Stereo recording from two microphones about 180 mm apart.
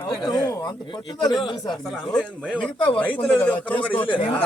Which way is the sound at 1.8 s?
5° left (ahead or behind).